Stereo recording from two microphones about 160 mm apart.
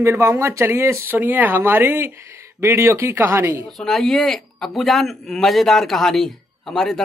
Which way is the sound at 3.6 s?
Centre (ahead or behind).